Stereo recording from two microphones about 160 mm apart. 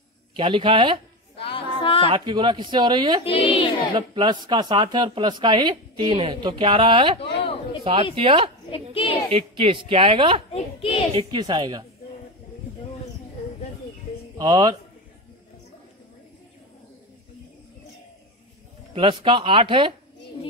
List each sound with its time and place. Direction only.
0.4 s a woman's voice: 30° right (ahead or behind)
1.4 s female singing: 35° left (ahead or behind)
2.0 s speech: 30° right (ahead or behind)
3.3 s speech: 35° left (ahead or behind)
3.9 s speech: 30° right (ahead or behind)
7.2 s a sound: 35° left (ahead or behind)
7.8 s a woman's voice: 35° right (ahead or behind)
8.9 s a sound: 35° left (ahead or behind)
9.3 s a woman's voice: 35° right (ahead or behind)
10.5 s a sound: 40° left (ahead or behind)
11.1 s speech: 30° right (ahead or behind)
14.4 s speech: 25° right (ahead or behind)
18.9 s a woman's voice: 35° right (ahead or behind)